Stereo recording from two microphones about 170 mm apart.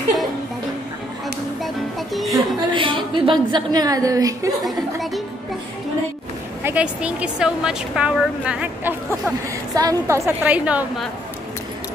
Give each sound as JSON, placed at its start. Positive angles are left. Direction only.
{"t": 1.6, "sound": "music", "side_deg": 0}
{"t": 2.3, "sound": "a woman's voice", "side_deg": -30}
{"t": 4.6, "sound": "a woman's voice", "side_deg": 0}
{"t": 6.6, "sound": "a woman's voice", "side_deg": -10}
{"t": 9.8, "sound": "a woman's voice", "side_deg": -20}